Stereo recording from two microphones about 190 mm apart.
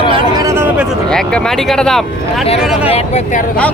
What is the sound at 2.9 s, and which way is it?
Speech, 35° left (ahead or behind).